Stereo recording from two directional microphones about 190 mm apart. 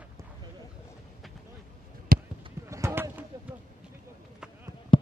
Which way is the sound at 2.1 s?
50° right (ahead or behind).